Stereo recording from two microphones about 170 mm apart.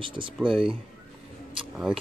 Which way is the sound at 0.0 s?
30° right (ahead or behind).